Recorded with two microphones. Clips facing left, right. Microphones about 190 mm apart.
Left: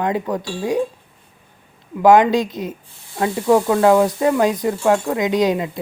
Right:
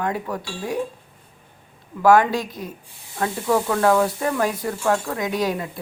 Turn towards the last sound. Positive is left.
turn(degrees=20)  # may be behind; listen again after turning